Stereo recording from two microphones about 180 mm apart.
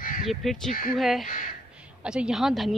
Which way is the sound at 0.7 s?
50° left (ahead or behind).